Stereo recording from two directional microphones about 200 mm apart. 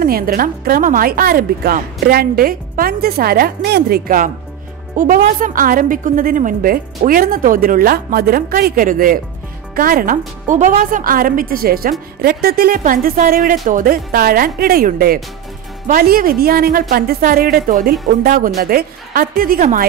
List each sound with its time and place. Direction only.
0.0 s a woman's voice: 45° right (ahead or behind)